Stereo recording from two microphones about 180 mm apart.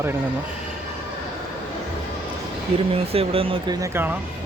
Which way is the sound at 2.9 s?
30° right (ahead or behind).